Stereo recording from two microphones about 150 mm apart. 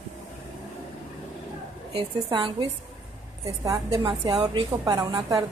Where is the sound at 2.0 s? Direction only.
30° right (ahead or behind).